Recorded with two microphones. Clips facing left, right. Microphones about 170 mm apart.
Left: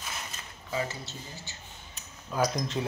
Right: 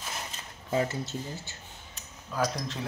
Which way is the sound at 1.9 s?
Centre (ahead or behind).